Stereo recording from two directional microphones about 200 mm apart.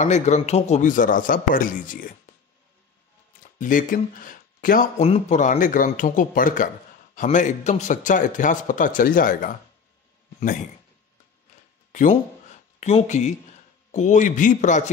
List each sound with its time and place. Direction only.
0.0 s speech: 35° left (ahead or behind)
3.5 s speech: 40° left (ahead or behind)
5.0 s speech: 35° left (ahead or behind)
11.9 s speech: 40° left (ahead or behind)